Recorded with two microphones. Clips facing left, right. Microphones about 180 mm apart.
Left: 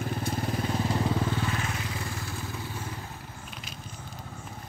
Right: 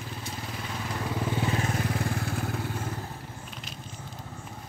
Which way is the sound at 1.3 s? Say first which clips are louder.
Right 3 dB; 25° right (ahead or behind).